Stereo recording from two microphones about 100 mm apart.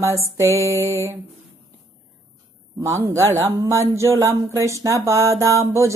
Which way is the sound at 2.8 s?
30° right (ahead or behind).